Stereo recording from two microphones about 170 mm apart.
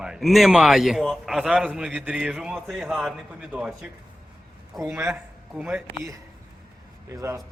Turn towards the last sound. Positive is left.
turn(degrees=-20)  # may be behind; listen again after turning